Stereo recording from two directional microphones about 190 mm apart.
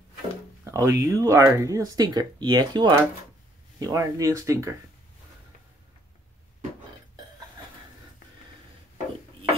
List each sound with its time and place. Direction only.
0.7 s speech: 15° right (ahead or behind)